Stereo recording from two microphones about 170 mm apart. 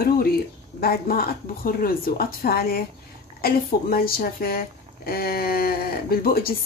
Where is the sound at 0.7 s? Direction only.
60° left (ahead or behind).